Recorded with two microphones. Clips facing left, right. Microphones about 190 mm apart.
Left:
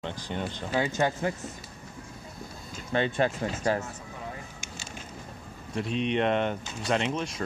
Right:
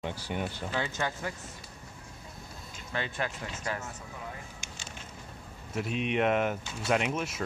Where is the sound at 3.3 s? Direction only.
40° left (ahead or behind).